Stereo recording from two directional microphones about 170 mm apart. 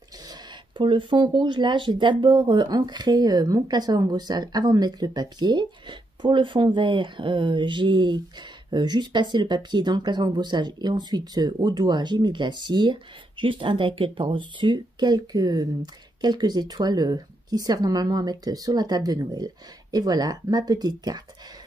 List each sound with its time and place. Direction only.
0.3 s speech: 30° right (ahead or behind)